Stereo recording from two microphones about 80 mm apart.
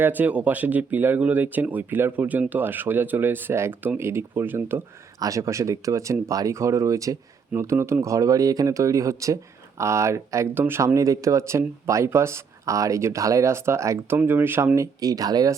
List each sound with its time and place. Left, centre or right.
0.0 s speech: right
5.2 s speech: right
14.3 s speech: right
14.8 s speech: right